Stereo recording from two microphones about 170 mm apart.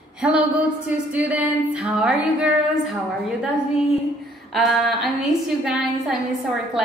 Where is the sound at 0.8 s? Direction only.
10° right (ahead or behind).